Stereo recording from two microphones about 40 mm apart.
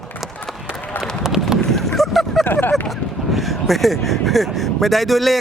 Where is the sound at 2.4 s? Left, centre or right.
Left.